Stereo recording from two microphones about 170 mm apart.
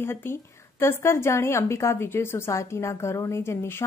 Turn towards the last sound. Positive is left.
turn(degrees=15)  # may be behind; listen again after turning